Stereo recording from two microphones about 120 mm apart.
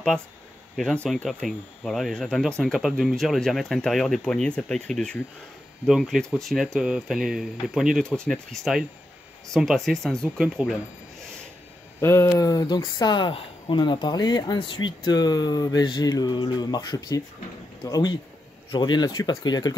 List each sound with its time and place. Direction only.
0.7 s speech: 5° left (ahead or behind)
12.0 s speech: 20° left (ahead or behind)